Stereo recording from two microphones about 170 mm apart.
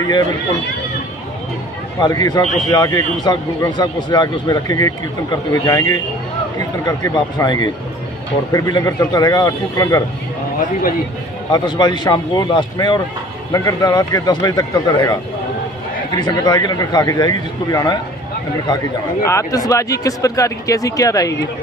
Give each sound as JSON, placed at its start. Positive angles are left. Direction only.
{"t": 2.0, "sound": "speech", "side_deg": 25}
{"t": 11.5, "sound": "speech", "side_deg": 25}
{"t": 16.2, "sound": "speech", "side_deg": 25}
{"t": 19.2, "sound": "speech", "side_deg": 20}